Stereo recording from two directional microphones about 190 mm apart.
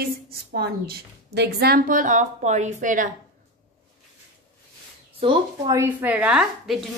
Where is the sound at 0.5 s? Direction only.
55° right (ahead or behind).